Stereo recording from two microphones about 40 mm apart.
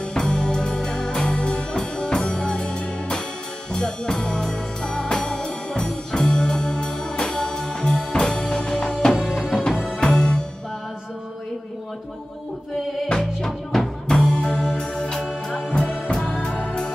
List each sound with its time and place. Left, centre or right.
0.1 s music: centre
13.2 s music: centre